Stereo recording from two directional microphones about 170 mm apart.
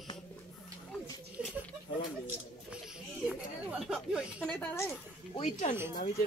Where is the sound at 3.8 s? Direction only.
5° right (ahead or behind).